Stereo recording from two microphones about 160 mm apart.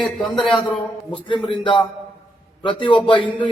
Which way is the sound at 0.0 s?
Centre (ahead or behind).